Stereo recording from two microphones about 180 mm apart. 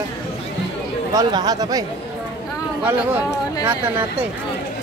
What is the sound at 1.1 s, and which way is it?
Speech, 20° right (ahead or behind).